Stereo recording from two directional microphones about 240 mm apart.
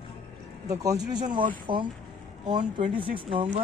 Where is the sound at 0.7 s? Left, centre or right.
Centre.